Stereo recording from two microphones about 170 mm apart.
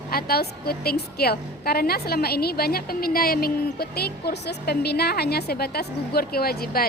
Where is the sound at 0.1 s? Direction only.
60° left (ahead or behind).